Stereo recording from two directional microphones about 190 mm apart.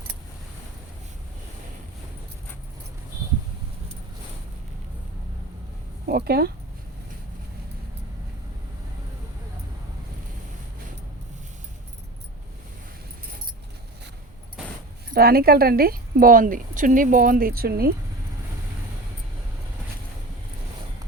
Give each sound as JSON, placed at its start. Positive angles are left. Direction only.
{"t": 6.1, "sound": "speech", "side_deg": -55}
{"t": 15.1, "sound": "a woman's voice", "side_deg": -50}